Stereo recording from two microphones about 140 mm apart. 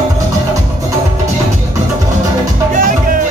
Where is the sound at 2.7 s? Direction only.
80° right.